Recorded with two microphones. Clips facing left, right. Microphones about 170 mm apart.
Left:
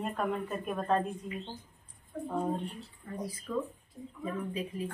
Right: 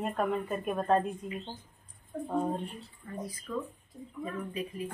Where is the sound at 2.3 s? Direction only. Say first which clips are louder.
Right 1 dB; 15° right (ahead or behind).